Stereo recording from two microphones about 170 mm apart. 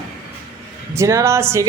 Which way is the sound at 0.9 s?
15° right (ahead or behind).